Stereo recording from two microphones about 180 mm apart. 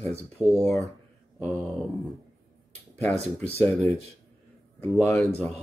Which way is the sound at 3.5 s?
5° left (ahead or behind).